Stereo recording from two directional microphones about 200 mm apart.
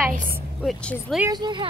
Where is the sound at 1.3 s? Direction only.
20° right (ahead or behind).